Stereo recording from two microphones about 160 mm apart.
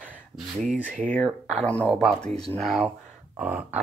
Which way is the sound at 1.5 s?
5° left (ahead or behind).